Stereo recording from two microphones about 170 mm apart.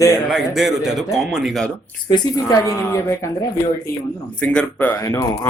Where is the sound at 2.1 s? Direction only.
20° left (ahead or behind).